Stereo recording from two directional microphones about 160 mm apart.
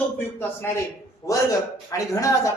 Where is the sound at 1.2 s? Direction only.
20° left (ahead or behind).